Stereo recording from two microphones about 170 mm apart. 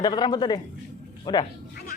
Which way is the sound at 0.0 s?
25° left (ahead or behind).